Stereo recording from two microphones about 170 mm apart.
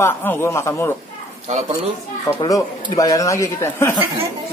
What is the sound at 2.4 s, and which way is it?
Speech, 20° left (ahead or behind).